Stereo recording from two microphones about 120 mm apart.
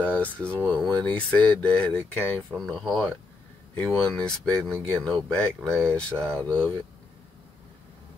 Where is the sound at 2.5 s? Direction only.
Centre (ahead or behind).